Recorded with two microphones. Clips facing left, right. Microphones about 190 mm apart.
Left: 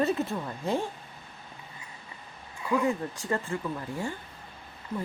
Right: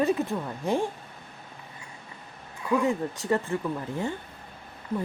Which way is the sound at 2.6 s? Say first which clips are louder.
Right 2 dB; centre (ahead or behind).